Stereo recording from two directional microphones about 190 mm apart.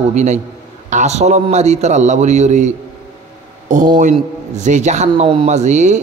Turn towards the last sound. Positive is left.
turn(degrees=-40)  # may be behind; listen again after turning